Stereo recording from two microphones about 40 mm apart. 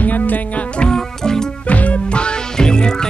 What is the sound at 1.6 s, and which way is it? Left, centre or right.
Music, left.